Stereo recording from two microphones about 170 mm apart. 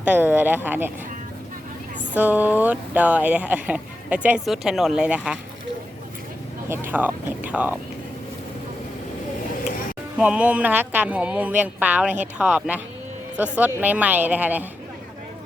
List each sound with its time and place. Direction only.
0.0 s speech: 10° right (ahead or behind)
2.1 s speech: 10° right (ahead or behind)
6.7 s speech: 10° right (ahead or behind)
10.2 s speech: 5° right (ahead or behind)